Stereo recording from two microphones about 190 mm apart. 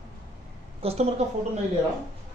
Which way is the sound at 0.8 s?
35° right (ahead or behind).